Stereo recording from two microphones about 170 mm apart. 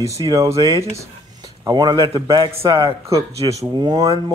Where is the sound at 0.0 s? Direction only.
20° right (ahead or behind).